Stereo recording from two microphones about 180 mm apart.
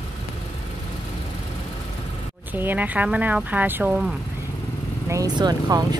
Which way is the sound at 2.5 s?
10° right (ahead or behind).